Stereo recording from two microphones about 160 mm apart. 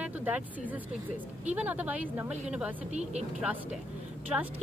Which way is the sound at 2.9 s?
45° right (ahead or behind).